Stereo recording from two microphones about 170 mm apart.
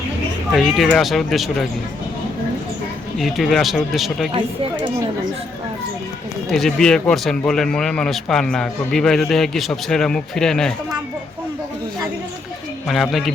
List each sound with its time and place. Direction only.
0.5 s speech: centre (ahead or behind)
3.2 s speech: centre (ahead or behind)
4.4 s speech: 30° right (ahead or behind)
6.5 s speech: centre (ahead or behind)
12.9 s speech: centre (ahead or behind)